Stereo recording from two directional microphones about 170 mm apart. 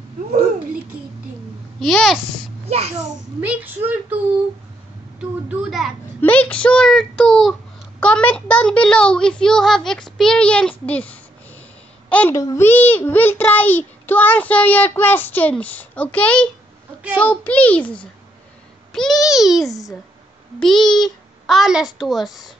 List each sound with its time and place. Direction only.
1.8 s a child's voice: centre (ahead or behind)
2.6 s a child's voice: 35° right (ahead or behind)
3.3 s a woman's voice: 10° right (ahead or behind)
5.2 s a child's voice: 5° right (ahead or behind)